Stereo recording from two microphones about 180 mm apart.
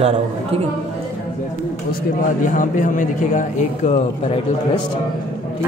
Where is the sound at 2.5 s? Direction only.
45° left (ahead or behind).